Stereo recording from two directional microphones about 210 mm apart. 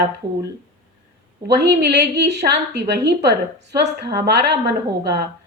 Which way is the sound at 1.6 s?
55° right (ahead or behind).